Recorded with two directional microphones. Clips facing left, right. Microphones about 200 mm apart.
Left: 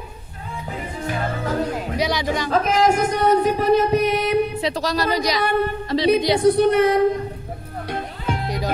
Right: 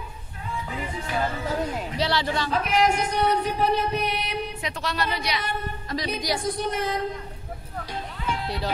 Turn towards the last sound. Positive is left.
turn(degrees=65)  # may be behind; listen again after turning